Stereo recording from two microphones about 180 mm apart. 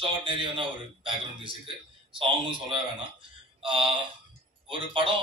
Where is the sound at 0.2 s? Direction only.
25° right (ahead or behind).